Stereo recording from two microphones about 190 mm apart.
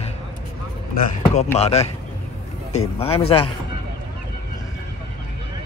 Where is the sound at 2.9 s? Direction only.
30° left (ahead or behind).